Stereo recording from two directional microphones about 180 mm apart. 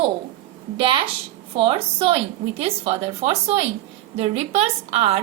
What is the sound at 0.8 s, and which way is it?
A woman's voice, 30° right (ahead or behind).